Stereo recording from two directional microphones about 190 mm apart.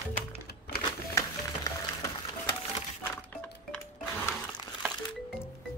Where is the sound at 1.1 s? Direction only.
15° left (ahead or behind).